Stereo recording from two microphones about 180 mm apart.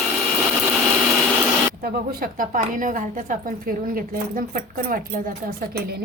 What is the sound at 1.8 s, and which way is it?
A woman's voice, 55° right (ahead or behind).